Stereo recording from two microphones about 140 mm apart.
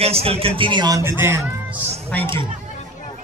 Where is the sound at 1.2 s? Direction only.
15° right (ahead or behind).